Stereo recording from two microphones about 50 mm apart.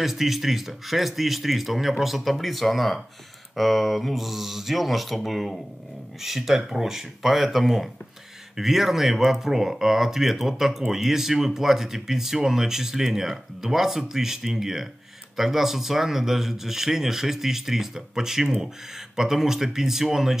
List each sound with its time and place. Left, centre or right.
0.0 s speech: centre